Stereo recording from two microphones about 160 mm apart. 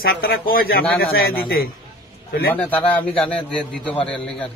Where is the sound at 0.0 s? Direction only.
70° left (ahead or behind).